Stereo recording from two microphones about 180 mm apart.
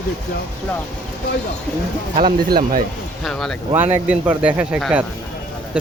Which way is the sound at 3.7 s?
10° right (ahead or behind).